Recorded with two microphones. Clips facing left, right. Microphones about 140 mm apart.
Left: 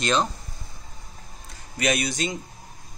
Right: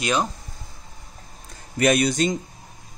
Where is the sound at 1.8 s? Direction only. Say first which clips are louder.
Right 6 dB; 50° right (ahead or behind).